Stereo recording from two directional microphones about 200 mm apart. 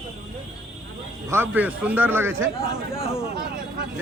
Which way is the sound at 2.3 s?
60° right (ahead or behind).